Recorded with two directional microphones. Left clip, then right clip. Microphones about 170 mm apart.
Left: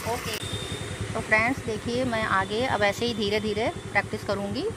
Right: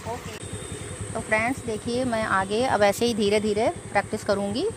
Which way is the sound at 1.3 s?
65° right (ahead or behind).